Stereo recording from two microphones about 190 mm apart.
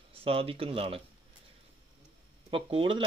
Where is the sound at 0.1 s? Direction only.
30° right (ahead or behind).